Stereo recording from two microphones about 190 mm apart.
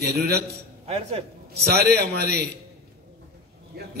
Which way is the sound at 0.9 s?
30° right (ahead or behind).